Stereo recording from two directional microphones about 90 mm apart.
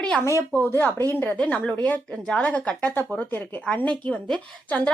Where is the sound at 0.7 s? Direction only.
25° left (ahead or behind).